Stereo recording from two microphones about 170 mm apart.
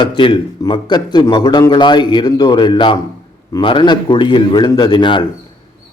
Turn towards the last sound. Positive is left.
turn(degrees=30)  # may be behind; listen again after turning